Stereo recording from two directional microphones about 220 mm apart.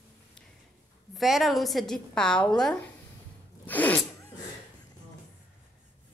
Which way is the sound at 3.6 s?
5° left (ahead or behind).